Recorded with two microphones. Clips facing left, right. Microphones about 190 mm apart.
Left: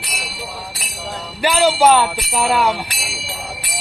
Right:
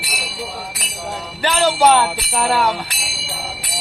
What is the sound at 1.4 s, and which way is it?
Jingle bell, 10° left (ahead or behind).